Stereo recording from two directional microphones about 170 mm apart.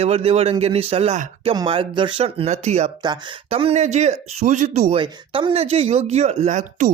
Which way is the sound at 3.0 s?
25° right (ahead or behind).